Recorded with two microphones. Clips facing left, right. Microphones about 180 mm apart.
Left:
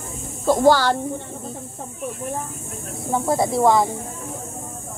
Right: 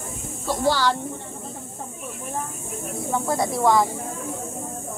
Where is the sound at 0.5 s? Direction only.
50° left (ahead or behind).